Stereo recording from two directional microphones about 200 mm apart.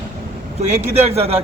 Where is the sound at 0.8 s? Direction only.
30° right (ahead or behind).